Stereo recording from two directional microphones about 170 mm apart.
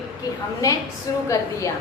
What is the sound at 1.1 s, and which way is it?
Speech, 20° left (ahead or behind).